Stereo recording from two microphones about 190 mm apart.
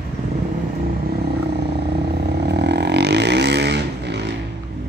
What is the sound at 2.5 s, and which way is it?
Vehicle, 60° right (ahead or behind).